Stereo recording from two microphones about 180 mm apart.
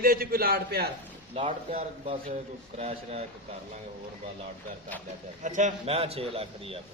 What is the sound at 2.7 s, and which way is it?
Speech, 35° right (ahead or behind).